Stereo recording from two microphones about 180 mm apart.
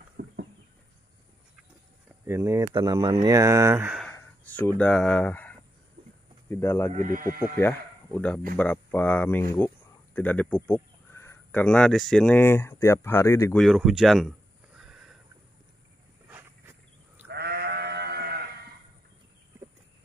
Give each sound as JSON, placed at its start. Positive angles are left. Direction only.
{"t": 0.2, "sound": "a sound", "side_deg": -55}
{"t": 2.2, "sound": "speech", "side_deg": -15}
{"t": 4.0, "sound": "a sound", "side_deg": 10}
{"t": 6.5, "sound": "speech", "side_deg": 10}
{"t": 6.9, "sound": "speech", "side_deg": -45}
{"t": 7.5, "sound": "speech", "side_deg": 10}
{"t": 13.6, "sound": "a sound", "side_deg": 0}
{"t": 16.3, "sound": "wild animals", "side_deg": -10}
{"t": 17.3, "sound": "sheep", "side_deg": -65}